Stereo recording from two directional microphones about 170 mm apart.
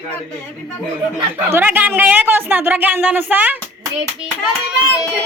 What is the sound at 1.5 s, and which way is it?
Speech, 10° right (ahead or behind).